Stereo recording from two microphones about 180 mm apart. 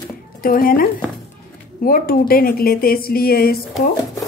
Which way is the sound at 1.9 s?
55° left (ahead or behind).